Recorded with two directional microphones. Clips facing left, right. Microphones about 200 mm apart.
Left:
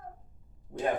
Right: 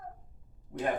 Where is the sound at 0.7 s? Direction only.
35° left (ahead or behind).